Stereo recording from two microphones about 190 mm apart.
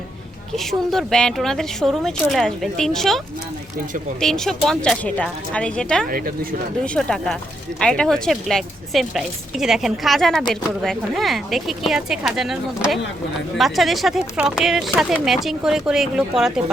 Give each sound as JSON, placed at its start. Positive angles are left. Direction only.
{"t": 0.5, "sound": "speech", "side_deg": 0}
{"t": 4.2, "sound": "speech", "side_deg": 0}
{"t": 6.1, "sound": "speech", "side_deg": -50}
{"t": 6.8, "sound": "speech", "side_deg": 5}